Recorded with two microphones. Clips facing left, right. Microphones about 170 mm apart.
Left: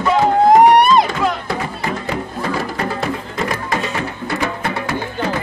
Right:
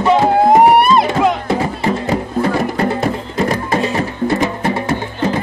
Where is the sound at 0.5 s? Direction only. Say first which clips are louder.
Left 1 dB; centre (ahead or behind).